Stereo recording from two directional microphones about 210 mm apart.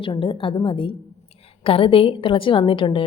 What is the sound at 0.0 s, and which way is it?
A woman's voice, 25° left (ahead or behind).